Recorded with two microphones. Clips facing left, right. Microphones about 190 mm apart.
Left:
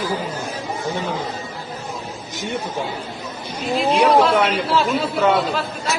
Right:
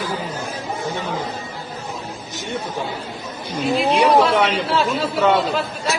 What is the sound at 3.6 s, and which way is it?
A man's voice, centre (ahead or behind).